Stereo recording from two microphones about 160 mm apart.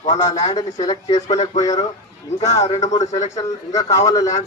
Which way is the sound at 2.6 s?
45° left (ahead or behind).